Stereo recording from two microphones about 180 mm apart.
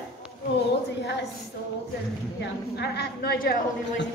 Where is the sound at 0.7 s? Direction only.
65° left (ahead or behind).